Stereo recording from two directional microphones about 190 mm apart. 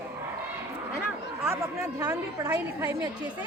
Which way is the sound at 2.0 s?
20° right (ahead or behind).